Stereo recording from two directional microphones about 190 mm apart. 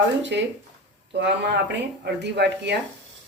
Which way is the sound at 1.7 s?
65° right (ahead or behind).